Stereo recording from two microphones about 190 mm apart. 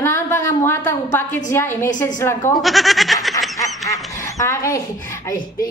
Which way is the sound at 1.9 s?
40° left (ahead or behind).